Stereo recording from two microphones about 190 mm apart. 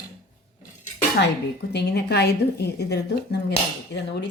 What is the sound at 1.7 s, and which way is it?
Speech, 60° left (ahead or behind).